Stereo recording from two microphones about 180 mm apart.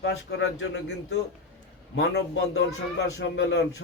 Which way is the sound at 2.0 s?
85° left.